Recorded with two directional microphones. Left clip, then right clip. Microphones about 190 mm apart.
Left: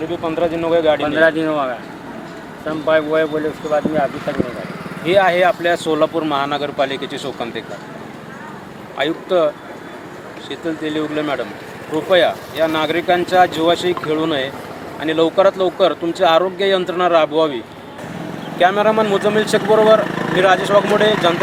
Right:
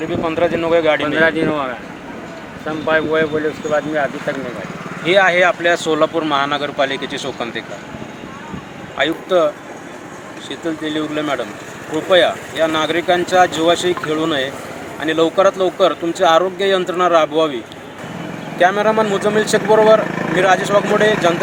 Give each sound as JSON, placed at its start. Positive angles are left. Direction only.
{"t": 0.1, "sound": "speech", "side_deg": 10}
{"t": 1.0, "sound": "speech", "side_deg": -10}
{"t": 5.0, "sound": "speech", "side_deg": 10}
{"t": 9.0, "sound": "speech", "side_deg": 5}
{"t": 10.5, "sound": "speech", "side_deg": 5}
{"t": 18.6, "sound": "speech", "side_deg": -5}
{"t": 20.1, "sound": "a sound", "side_deg": -30}
{"t": 20.4, "sound": "speech", "side_deg": 0}